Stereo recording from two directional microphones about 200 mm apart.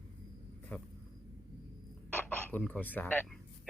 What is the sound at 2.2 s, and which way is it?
Speech, 10° left (ahead or behind).